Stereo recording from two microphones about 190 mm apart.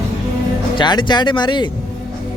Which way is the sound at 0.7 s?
25° left (ahead or behind).